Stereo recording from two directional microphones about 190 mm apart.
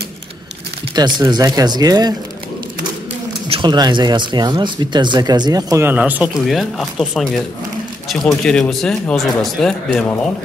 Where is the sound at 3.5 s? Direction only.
25° right (ahead or behind).